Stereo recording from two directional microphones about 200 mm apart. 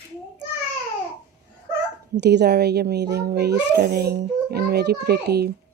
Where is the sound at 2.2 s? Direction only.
55° right (ahead or behind).